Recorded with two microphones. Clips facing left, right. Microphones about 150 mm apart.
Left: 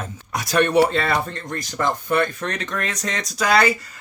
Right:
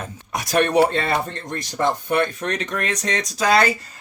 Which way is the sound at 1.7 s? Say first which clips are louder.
Right 1 dB; 25° right (ahead or behind).